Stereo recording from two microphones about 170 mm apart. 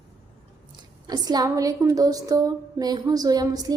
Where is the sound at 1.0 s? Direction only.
25° right (ahead or behind).